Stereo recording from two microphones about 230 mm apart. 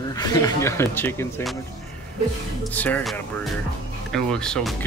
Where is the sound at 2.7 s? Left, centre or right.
Centre.